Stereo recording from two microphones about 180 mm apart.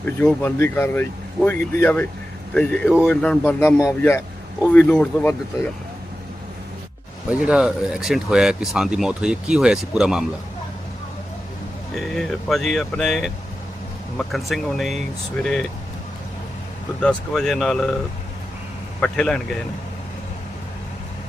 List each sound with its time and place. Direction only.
0.0 s speech: 10° left (ahead or behind)
7.3 s speech: 5° right (ahead or behind)
11.9 s speech: centre (ahead or behind)
17.0 s speech: 5° left (ahead or behind)
18.9 s speech: 5° left (ahead or behind)